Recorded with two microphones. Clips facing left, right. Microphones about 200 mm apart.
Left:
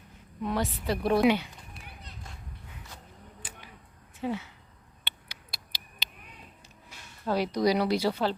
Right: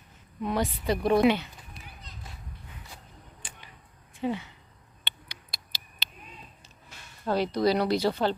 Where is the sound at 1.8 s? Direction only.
60° left (ahead or behind).